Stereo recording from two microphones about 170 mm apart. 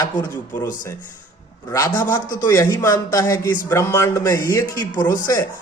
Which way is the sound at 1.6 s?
20° left (ahead or behind).